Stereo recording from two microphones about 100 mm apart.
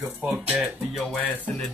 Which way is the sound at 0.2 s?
15° right (ahead or behind).